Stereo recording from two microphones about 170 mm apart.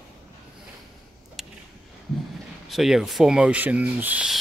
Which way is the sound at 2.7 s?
Centre (ahead or behind).